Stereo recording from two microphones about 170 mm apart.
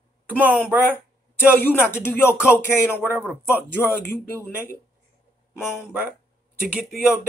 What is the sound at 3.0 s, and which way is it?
Speech, 10° right (ahead or behind).